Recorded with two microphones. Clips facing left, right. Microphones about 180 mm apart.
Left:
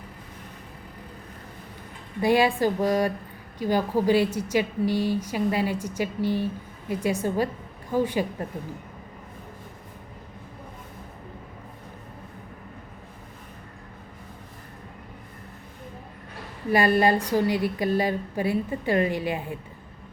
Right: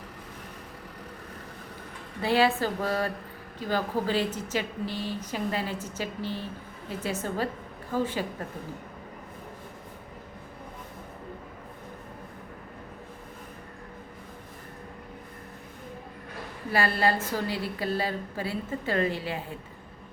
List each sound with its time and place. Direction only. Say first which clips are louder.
2.2 s speech: left 3 dB; 15° left (ahead or behind)
16.7 s speech: left 5 dB; 15° left (ahead or behind)